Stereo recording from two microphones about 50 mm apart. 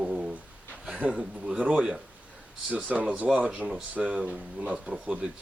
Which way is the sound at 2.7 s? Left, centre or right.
Right.